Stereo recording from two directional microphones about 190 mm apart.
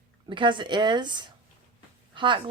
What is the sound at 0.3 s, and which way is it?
Speech, 25° right (ahead or behind).